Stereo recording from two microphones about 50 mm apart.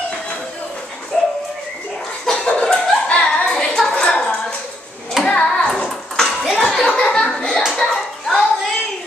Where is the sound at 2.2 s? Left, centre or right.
Centre.